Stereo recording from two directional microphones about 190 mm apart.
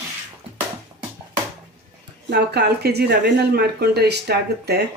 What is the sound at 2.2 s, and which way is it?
Speech, 60° right (ahead or behind).